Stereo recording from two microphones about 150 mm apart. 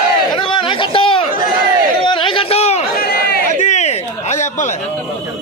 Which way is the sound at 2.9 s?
90° left.